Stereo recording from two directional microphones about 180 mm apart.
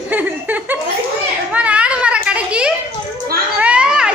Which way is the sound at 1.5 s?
5° right (ahead or behind).